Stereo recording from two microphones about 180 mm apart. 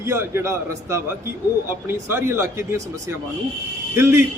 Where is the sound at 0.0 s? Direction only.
15° right (ahead or behind).